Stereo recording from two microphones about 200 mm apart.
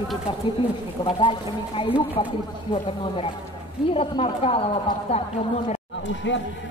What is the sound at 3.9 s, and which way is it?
Speech, 25° left (ahead or behind).